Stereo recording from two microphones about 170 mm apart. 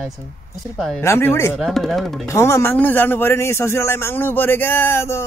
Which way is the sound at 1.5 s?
Centre (ahead or behind).